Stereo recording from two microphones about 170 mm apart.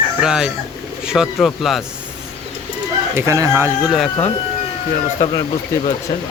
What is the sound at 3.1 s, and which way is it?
Speech, 20° right (ahead or behind).